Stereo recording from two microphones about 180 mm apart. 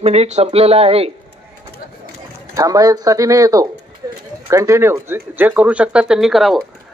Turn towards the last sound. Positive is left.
turn(degrees=0)  # may be behind; listen again after turning